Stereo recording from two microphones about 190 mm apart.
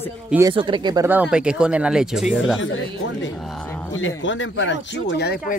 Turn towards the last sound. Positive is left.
turn(degrees=65)  # may be behind; listen again after turning